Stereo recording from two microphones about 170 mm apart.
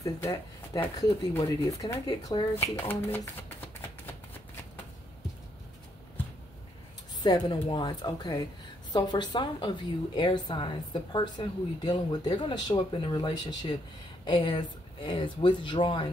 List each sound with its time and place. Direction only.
0.7 s a woman's voice: 15° left (ahead or behind)
7.2 s a woman's voice: 25° left (ahead or behind)